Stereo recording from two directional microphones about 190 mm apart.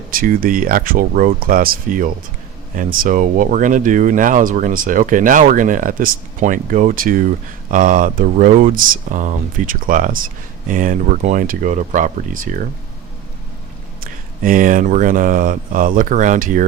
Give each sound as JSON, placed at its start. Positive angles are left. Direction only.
{"t": 0.1, "sound": "speech", "side_deg": -50}
{"t": 14.0, "sound": "speech", "side_deg": -45}